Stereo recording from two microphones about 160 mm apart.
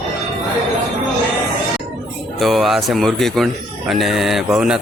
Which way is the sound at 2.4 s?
Centre (ahead or behind).